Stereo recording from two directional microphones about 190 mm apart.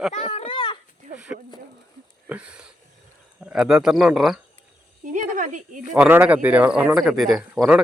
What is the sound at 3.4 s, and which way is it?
Speech, 5° right (ahead or behind).